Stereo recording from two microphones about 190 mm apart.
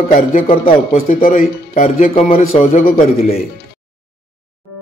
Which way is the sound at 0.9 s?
45° left (ahead or behind).